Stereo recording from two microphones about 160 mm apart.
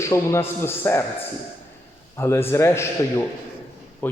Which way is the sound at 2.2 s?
15° left (ahead or behind).